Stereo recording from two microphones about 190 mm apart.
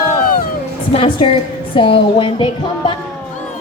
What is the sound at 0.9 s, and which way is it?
A woman's voice, 30° left (ahead or behind).